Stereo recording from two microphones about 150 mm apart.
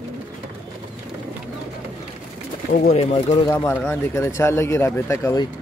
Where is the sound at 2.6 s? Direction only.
65° left (ahead or behind).